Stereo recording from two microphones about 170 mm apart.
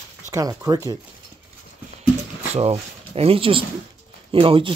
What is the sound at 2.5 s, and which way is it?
Speech, 35° right (ahead or behind).